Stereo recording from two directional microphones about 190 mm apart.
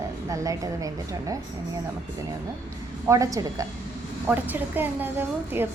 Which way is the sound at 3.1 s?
15° right (ahead or behind).